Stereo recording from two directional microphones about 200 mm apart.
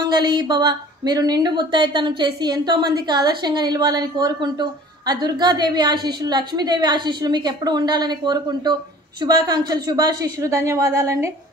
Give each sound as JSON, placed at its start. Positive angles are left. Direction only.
{"t": 0.1, "sound": "a woman's voice", "side_deg": -20}